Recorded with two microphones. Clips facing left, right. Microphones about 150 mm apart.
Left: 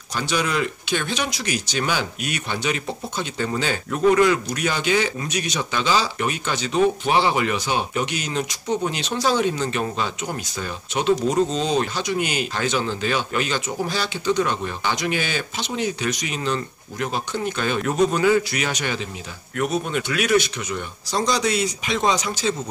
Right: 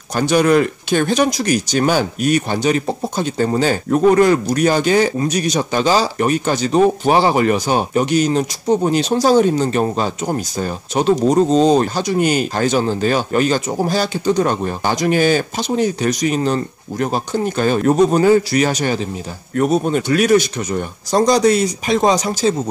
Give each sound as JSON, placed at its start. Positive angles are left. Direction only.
{"t": 0.1, "sound": "speech", "side_deg": -50}